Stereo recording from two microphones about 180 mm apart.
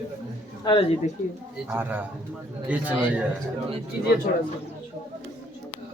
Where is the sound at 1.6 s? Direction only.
10° right (ahead or behind).